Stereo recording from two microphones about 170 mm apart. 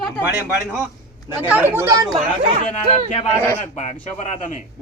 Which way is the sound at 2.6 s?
45° left (ahead or behind).